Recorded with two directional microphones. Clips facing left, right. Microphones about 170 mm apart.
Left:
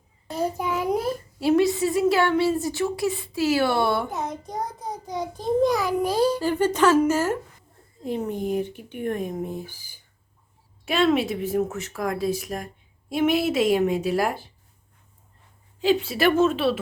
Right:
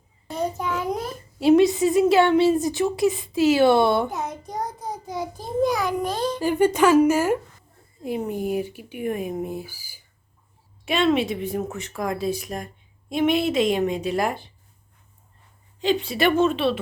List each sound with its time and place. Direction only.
0.5 s a sound: 10° left (ahead or behind)
1.4 s a woman's voice: 20° right (ahead or behind)
4.1 s child singing: centre (ahead or behind)
6.4 s speech: 15° right (ahead or behind)
10.8 s child singing: centre (ahead or behind)
15.8 s child singing: 5° left (ahead or behind)